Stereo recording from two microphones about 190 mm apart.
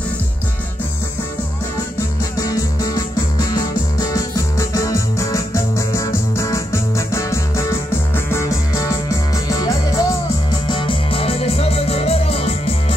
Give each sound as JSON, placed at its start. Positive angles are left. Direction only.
{"t": 2.3, "sound": "music", "side_deg": 20}